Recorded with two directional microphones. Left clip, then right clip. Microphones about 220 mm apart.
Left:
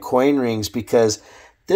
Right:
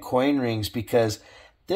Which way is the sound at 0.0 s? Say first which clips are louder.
Left 6 dB; 30° left (ahead or behind).